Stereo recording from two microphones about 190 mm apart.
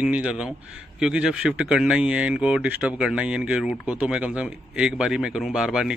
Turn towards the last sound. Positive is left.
turn(degrees=0)  # may be behind; listen again after turning